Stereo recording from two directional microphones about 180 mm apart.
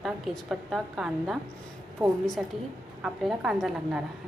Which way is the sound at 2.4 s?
5° right (ahead or behind).